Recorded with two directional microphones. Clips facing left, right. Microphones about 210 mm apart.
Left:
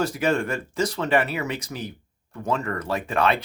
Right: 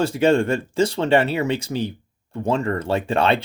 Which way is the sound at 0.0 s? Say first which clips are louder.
Right 6 dB; 30° right (ahead or behind).